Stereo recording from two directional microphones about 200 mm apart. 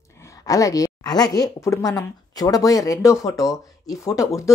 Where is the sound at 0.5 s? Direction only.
15° left (ahead or behind).